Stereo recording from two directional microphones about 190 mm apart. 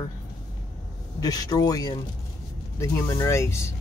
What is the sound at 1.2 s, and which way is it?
Speech, 20° left (ahead or behind).